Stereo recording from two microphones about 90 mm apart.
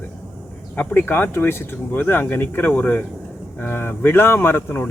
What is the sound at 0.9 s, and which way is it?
Speech, 20° left (ahead or behind).